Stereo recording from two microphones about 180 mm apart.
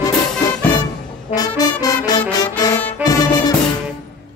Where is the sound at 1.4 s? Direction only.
20° left (ahead or behind).